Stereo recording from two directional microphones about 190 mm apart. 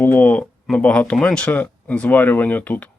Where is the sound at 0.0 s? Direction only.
10° left (ahead or behind).